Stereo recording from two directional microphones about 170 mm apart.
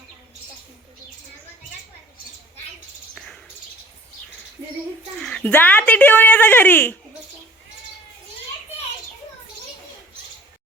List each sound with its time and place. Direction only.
5.2 s a woman's voice: 5° left (ahead or behind)